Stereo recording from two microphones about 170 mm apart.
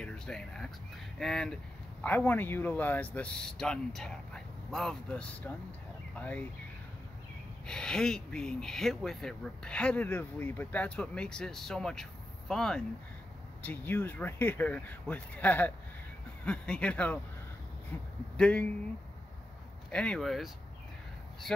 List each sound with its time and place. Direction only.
0.0 s speech: 5° left (ahead or behind)
7.6 s speech: 5° left (ahead or behind)
19.9 s speech: 5° left (ahead or behind)